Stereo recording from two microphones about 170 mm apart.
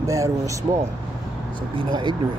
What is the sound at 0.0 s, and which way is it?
Speech, 20° right (ahead or behind).